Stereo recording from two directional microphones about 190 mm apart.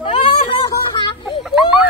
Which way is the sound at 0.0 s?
30° left (ahead or behind).